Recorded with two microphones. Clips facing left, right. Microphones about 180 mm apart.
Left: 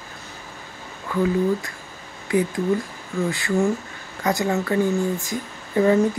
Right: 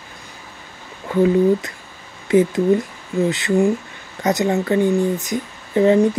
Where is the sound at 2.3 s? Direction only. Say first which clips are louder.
Right 6 dB; 25° right (ahead or behind).